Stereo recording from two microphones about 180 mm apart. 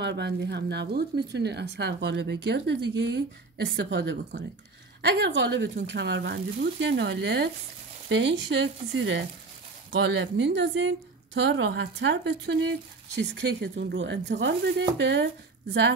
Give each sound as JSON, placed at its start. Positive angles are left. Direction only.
{"t": 0.0, "sound": "a woman's voice", "side_deg": -70}